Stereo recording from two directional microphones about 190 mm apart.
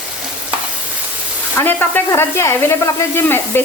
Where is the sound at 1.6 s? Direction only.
10° left (ahead or behind).